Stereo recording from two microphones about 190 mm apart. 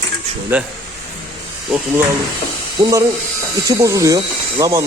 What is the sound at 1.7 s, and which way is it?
Speech, centre (ahead or behind).